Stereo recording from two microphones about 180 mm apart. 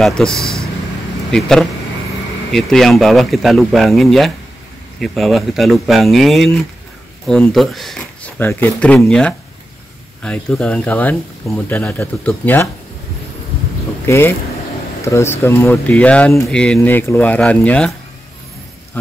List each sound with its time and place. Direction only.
0.0 s speech: 5° left (ahead or behind)
14.0 s speech: 15° left (ahead or behind)